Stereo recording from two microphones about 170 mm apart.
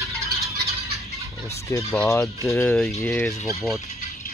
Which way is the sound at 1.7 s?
20° left (ahead or behind).